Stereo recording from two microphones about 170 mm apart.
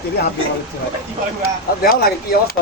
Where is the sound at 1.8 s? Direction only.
60° left (ahead or behind).